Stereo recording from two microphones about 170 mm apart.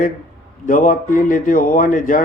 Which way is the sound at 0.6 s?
50° left (ahead or behind).